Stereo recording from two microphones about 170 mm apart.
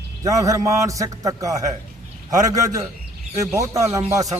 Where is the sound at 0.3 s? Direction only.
20° right (ahead or behind).